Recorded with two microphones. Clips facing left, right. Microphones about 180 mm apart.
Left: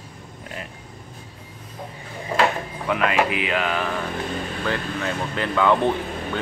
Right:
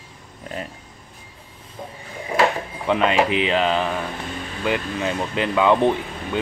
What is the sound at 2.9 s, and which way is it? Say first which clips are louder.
Speech: right 3 dB; 25° right (ahead or behind).